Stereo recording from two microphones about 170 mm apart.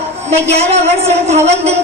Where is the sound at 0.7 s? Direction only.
40° right (ahead or behind).